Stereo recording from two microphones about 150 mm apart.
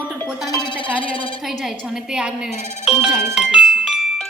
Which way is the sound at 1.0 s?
35° left (ahead or behind).